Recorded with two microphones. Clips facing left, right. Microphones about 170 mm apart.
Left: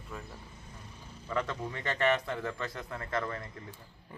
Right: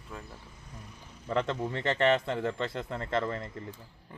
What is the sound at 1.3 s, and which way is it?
A man's voice, 30° right (ahead or behind).